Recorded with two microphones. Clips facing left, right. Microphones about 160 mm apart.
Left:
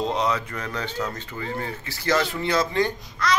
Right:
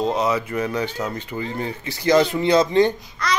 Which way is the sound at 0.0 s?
5° right (ahead or behind).